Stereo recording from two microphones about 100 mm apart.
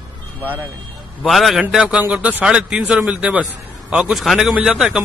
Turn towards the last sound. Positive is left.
turn(degrees=-5)  # may be behind; listen again after turning